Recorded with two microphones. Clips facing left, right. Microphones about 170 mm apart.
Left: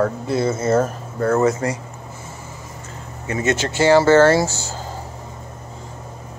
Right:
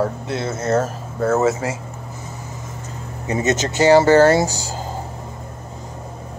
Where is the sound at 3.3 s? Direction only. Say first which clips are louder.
Right 1 dB; 20° right (ahead or behind).